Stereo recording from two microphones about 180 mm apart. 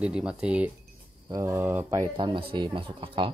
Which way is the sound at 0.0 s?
5° right (ahead or behind).